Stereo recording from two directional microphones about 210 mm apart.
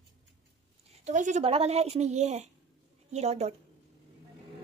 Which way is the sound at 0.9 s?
35° right (ahead or behind).